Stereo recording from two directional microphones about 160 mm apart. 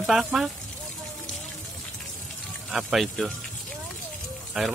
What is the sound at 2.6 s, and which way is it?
Speech, centre (ahead or behind).